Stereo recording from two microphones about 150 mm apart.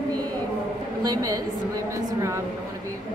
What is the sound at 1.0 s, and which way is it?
Speech, 25° right (ahead or behind).